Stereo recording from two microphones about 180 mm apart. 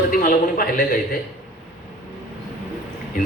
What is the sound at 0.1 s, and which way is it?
Speech, 50° left (ahead or behind).